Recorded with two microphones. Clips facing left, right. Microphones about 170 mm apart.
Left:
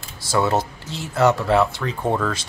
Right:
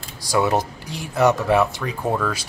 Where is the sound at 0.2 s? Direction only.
15° right (ahead or behind).